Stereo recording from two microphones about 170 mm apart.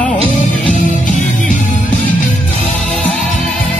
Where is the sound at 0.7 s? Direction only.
45° left (ahead or behind).